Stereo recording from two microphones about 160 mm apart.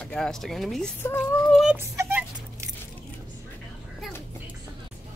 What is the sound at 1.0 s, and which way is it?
Speech, 10° left (ahead or behind).